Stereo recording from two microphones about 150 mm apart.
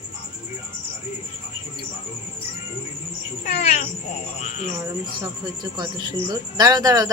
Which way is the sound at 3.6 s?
55° left (ahead or behind).